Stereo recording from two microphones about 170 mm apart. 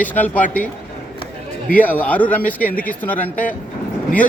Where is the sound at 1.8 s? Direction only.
10° left (ahead or behind).